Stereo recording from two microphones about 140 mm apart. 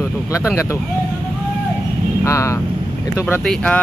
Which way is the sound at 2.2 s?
20° left (ahead or behind).